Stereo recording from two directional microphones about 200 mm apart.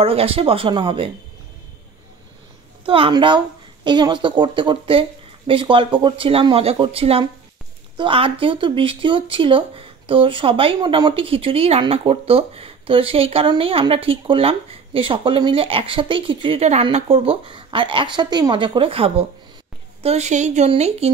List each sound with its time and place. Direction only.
0.0 s speech: 30° right (ahead or behind)
2.8 s speech: 25° right (ahead or behind)